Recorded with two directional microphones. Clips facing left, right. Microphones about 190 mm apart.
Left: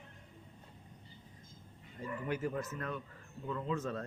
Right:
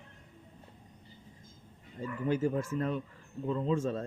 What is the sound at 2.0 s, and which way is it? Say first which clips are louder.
A man's voice: right 7 dB; 25° right (ahead or behind).